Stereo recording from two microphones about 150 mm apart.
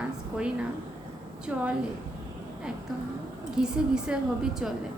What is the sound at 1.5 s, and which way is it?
Speech, 10° right (ahead or behind).